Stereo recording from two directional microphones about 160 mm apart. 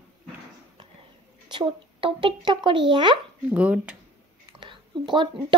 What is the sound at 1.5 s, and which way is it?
Speech, 30° right (ahead or behind).